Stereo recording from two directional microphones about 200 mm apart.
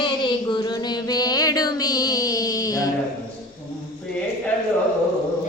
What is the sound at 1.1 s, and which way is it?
Music, 20° left (ahead or behind).